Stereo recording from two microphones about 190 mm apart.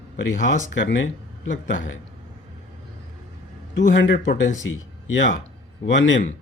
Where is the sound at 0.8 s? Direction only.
65° left (ahead or behind).